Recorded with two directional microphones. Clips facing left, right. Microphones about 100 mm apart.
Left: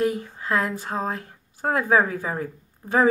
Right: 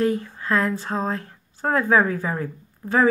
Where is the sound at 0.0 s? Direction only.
15° left (ahead or behind).